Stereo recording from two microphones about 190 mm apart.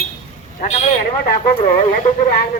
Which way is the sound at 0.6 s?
35° left (ahead or behind).